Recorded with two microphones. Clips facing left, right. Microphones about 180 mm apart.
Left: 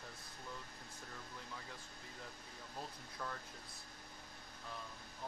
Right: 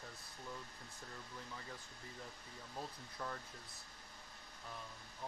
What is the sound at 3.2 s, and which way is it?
Speech, 10° right (ahead or behind).